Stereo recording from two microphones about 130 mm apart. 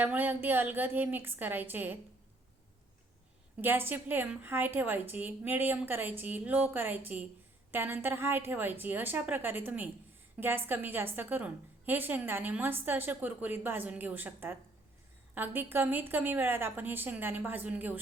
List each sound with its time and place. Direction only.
0.0 s a woman's voice: 15° right (ahead or behind)
3.6 s a woman's voice: 15° right (ahead or behind)